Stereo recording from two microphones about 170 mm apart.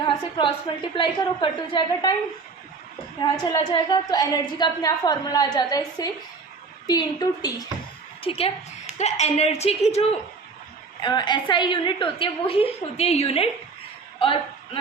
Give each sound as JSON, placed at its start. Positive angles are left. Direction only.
{"t": 0.2, "sound": "a sound", "side_deg": 25}
{"t": 0.9, "sound": "a woman's voice", "side_deg": 30}
{"t": 3.2, "sound": "a woman's voice", "side_deg": 25}
{"t": 8.2, "sound": "speech", "side_deg": 35}
{"t": 11.0, "sound": "a woman's voice", "side_deg": 25}
{"t": 14.2, "sound": "a sound", "side_deg": 30}